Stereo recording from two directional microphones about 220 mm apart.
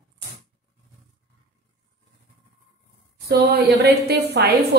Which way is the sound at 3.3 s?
45° right (ahead or behind).